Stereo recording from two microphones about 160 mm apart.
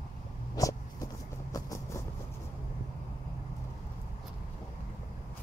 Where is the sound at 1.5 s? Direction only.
20° left (ahead or behind).